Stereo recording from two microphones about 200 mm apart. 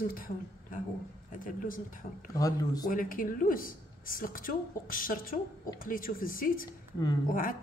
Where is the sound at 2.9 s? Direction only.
45° left (ahead or behind).